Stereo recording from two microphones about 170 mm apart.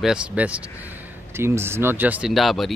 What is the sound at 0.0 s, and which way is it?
Speech, 5° right (ahead or behind).